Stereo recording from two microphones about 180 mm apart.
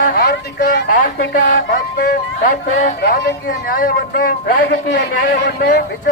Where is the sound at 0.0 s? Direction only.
55° left (ahead or behind).